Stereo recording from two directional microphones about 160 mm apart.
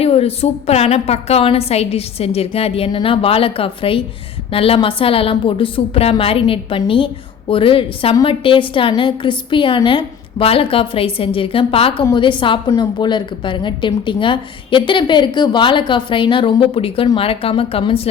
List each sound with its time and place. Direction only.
0.0 s a woman's voice: 40° left (ahead or behind)